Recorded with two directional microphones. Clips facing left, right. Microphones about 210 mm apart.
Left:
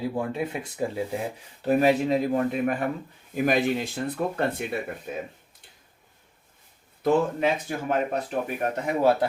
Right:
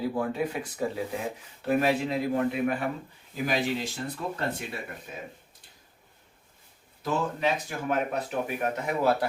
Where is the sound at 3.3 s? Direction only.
55° left (ahead or behind).